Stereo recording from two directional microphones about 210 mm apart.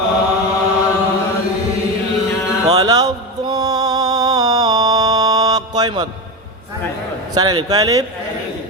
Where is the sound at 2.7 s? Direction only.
15° right (ahead or behind).